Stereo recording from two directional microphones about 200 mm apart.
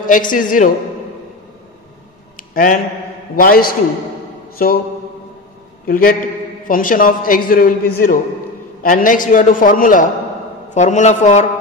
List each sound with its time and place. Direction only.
0.0 s a man's voice: 40° left (ahead or behind)
2.3 s a sound: 40° left (ahead or behind)
3.3 s a man's voice: 45° left (ahead or behind)
5.9 s a man's voice: 45° left (ahead or behind)